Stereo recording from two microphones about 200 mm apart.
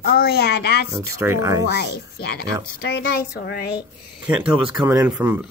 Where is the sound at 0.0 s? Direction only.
50° left (ahead or behind).